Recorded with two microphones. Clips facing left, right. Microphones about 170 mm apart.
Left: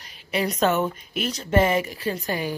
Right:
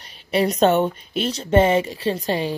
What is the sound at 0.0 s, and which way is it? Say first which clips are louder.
A woman's voice: right 5 dB; 30° right (ahead or behind).